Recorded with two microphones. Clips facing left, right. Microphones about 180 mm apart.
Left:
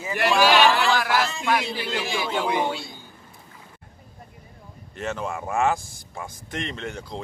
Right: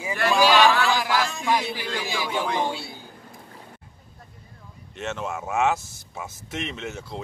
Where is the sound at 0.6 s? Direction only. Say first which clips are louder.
Even; 15° left (ahead or behind).